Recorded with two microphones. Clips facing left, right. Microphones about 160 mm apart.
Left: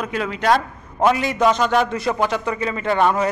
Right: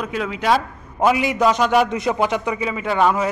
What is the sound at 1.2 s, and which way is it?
Speech, 10° right (ahead or behind).